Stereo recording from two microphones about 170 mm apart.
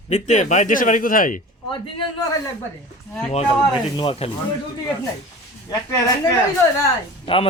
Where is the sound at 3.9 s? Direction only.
30° left (ahead or behind).